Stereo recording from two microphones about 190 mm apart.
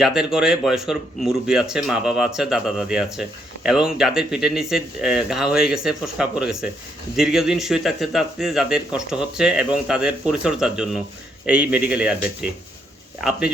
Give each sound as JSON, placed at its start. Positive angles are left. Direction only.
{"t": 0.0, "sound": "speech", "side_deg": -5}